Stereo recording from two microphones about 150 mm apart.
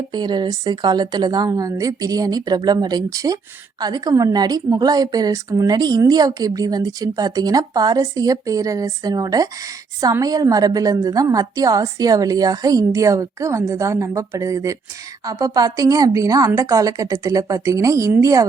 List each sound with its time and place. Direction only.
0.1 s a woman's voice: 30° right (ahead or behind)